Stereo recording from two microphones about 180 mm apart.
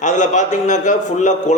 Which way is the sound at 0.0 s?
45° left (ahead or behind).